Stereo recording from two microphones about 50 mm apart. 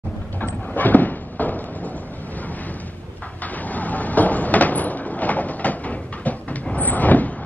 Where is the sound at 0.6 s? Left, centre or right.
Left.